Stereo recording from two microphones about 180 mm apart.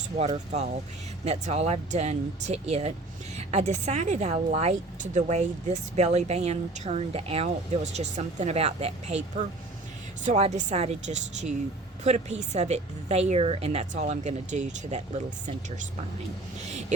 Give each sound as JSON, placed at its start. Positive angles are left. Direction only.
{"t": 1.2, "sound": "a woman's voice", "side_deg": -35}
{"t": 10.2, "sound": "a woman's voice", "side_deg": -35}